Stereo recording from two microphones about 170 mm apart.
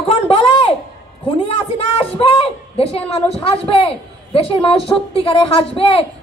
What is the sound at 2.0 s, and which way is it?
A woman's voice, 35° left (ahead or behind).